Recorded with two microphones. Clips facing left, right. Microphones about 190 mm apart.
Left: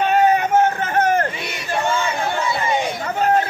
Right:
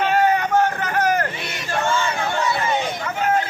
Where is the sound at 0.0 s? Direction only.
20° left (ahead or behind).